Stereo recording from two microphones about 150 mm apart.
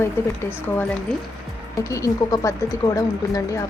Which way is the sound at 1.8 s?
20° left (ahead or behind).